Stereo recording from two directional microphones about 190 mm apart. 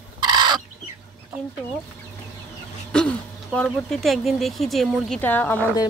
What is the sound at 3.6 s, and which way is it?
Speech, centre (ahead or behind).